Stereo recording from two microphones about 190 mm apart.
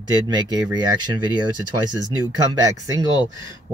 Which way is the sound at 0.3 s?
20° right (ahead or behind).